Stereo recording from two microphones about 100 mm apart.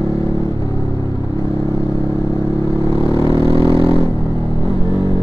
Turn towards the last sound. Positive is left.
turn(degrees=-60)  # may be behind; listen again after turning